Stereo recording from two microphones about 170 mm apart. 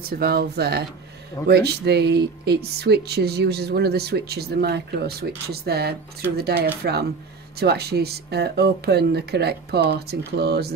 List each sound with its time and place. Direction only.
0.0 s speech: 65° right (ahead or behind)